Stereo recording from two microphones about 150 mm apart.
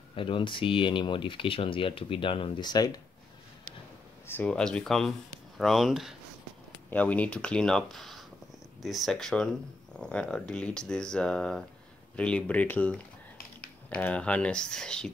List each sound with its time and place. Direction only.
0.1 s speech: 35° left (ahead or behind)
4.3 s speech: 10° left (ahead or behind)
6.9 s speech: 10° left (ahead or behind)